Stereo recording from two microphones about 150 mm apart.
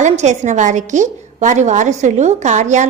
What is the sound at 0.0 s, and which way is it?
A woman's voice, 50° right (ahead or behind).